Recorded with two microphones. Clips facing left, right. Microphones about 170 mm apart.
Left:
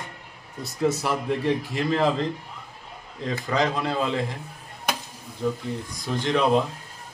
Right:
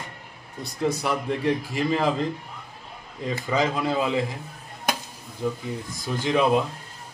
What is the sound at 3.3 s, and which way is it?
Speech, 5° right (ahead or behind).